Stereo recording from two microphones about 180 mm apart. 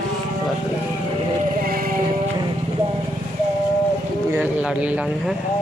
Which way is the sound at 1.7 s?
55° right (ahead or behind).